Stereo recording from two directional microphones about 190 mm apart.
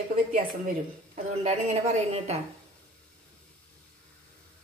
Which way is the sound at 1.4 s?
35° right (ahead or behind).